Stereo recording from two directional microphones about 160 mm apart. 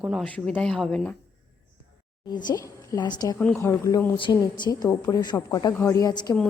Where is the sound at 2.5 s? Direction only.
20° left (ahead or behind).